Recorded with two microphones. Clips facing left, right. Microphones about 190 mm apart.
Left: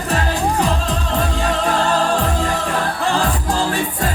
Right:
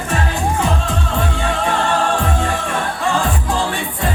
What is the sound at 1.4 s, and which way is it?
Music, 40° left (ahead or behind).